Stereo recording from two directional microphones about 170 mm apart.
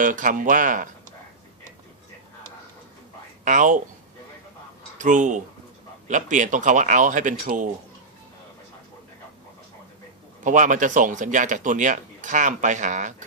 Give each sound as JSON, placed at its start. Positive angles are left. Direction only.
{"t": 0.0, "sound": "speech", "side_deg": -50}
{"t": 3.4, "sound": "speech", "side_deg": -50}
{"t": 5.0, "sound": "speech", "side_deg": -50}
{"t": 10.4, "sound": "speech", "side_deg": -50}